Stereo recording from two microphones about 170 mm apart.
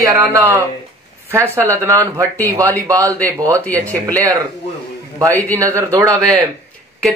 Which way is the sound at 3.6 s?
10° left (ahead or behind).